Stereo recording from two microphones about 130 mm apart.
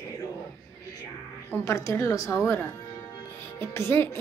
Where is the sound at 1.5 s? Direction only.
25° left (ahead or behind).